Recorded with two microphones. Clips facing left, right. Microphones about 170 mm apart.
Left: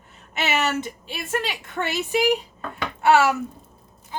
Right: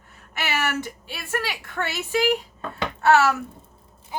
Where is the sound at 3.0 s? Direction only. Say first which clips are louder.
Left 1 dB; 15° left (ahead or behind).